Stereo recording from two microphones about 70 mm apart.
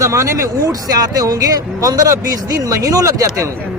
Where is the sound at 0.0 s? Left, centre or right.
Right.